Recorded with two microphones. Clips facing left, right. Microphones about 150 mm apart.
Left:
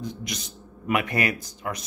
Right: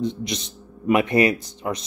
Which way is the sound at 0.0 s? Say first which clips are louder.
Right 8 dB; 25° right (ahead or behind).